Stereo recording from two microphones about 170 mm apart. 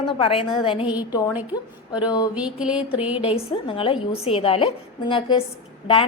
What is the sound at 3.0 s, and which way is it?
Speech, 10° right (ahead or behind).